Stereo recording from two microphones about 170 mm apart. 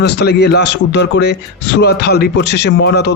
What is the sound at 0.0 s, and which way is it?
A man's voice, 80° left.